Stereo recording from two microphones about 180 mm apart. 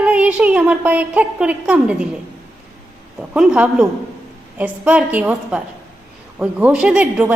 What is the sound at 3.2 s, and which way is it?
A woman's voice, 5° right (ahead or behind).